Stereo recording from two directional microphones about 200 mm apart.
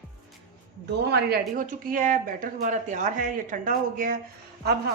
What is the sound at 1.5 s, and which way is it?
Speech, 40° right (ahead or behind).